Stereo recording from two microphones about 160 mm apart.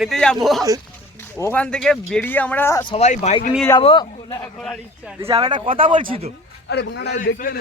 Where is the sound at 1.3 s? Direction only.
20° left (ahead or behind).